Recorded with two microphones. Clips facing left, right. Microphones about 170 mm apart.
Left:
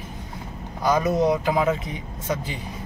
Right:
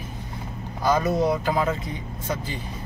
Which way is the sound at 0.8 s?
15° left (ahead or behind).